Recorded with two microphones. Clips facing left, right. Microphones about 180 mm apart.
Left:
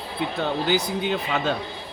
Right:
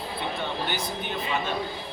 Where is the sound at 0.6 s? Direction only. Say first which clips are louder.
Left 7 dB; 80° left.